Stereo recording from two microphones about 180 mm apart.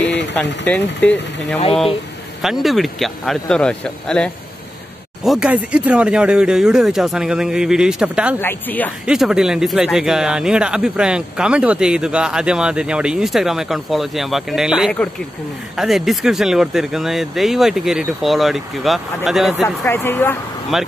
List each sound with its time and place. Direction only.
0.0 s a sound: 75° left (ahead or behind)
0.3 s speech: 10° left (ahead or behind)
8.4 s speech: 10° left (ahead or behind)
9.0 s speech: 5° right (ahead or behind)
19.9 s speech: 10° left (ahead or behind)
20.7 s speech: centre (ahead or behind)